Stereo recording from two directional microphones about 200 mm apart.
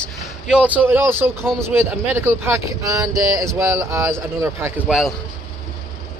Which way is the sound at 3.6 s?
15° right (ahead or behind).